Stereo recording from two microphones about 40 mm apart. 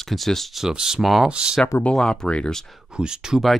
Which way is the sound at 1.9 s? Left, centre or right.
Centre.